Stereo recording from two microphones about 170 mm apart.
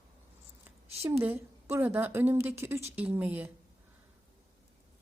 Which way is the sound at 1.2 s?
15° right (ahead or behind).